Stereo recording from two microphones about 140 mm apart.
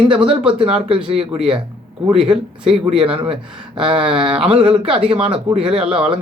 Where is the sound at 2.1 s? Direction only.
5° right (ahead or behind).